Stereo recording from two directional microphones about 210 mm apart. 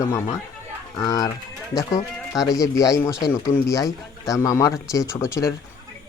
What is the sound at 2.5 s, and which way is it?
Speech, 15° left (ahead or behind).